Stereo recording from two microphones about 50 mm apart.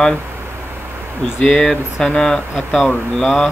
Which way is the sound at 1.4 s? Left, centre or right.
Centre.